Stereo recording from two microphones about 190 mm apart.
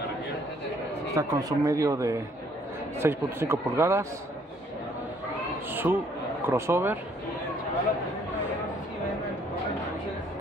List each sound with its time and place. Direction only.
1.1 s a man's voice: 15° right (ahead or behind)
5.7 s a man's voice: 10° right (ahead or behind)